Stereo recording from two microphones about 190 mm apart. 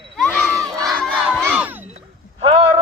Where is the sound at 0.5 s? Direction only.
20° right (ahead or behind).